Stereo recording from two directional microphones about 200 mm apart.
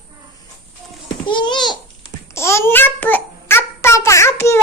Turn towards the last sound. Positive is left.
turn(degrees=15)  # may be behind; listen again after turning